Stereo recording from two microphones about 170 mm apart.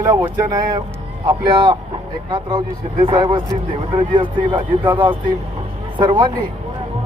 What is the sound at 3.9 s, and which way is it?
Speech, 30° right (ahead or behind).